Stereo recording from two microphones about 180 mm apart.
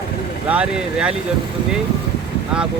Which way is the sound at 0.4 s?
5° right (ahead or behind).